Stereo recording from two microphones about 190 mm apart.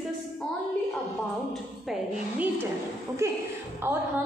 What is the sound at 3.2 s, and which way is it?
Speech, 15° right (ahead or behind).